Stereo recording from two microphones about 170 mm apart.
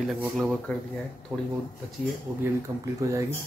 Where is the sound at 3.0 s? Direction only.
20° right (ahead or behind).